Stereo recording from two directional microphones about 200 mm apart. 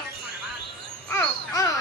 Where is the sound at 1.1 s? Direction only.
15° left (ahead or behind).